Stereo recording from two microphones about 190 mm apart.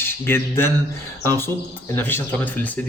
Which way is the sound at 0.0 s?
10° left (ahead or behind).